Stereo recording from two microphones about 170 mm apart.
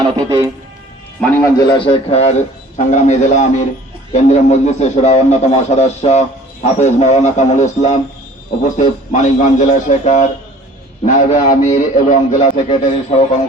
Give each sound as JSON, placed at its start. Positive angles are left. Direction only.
{"t": 0.0, "sound": "speech", "side_deg": -20}
{"t": 1.5, "sound": "a man's voice", "side_deg": 25}
{"t": 12.6, "sound": "a man's voice", "side_deg": 40}